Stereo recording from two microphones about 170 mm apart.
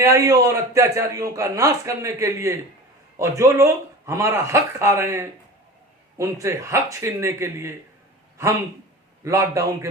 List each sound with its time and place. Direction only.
0.0 s a man's voice: 15° right (ahead or behind)
6.4 s a man's voice: 15° right (ahead or behind)